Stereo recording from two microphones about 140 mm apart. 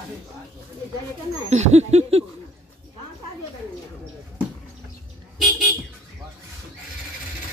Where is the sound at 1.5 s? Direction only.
55° right (ahead or behind).